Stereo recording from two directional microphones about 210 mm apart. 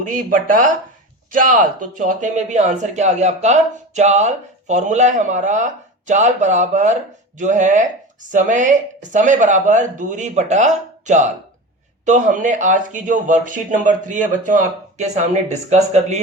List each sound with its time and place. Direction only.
0.0 s speech: 40° right (ahead or behind)